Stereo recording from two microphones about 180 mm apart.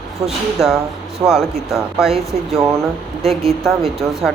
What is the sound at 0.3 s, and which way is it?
Speech, centre (ahead or behind).